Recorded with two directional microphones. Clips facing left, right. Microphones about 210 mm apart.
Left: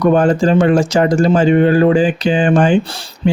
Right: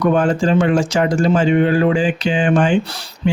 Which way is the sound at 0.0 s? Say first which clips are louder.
Left 4 dB; 40° left (ahead or behind).